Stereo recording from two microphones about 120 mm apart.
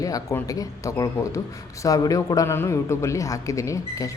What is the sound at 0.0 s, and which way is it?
A man's voice, 30° left (ahead or behind).